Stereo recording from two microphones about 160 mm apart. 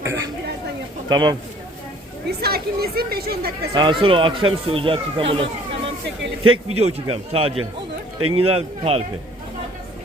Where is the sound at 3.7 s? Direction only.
30° right (ahead or behind).